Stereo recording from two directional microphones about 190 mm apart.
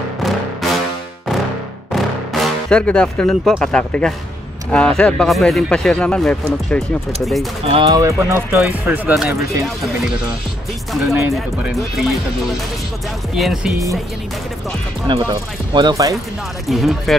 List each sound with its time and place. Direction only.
0.2 s music: centre (ahead or behind)
1.9 s speech: centre (ahead or behind)
7.6 s speech: 25° right (ahead or behind)
8.3 s speech: 10° right (ahead or behind)
10.9 s speech: centre (ahead or behind)
15.1 s speech: 25° right (ahead or behind)
16.6 s speech: centre (ahead or behind)